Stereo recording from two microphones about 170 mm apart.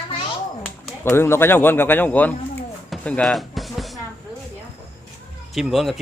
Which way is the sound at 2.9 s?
5° left (ahead or behind).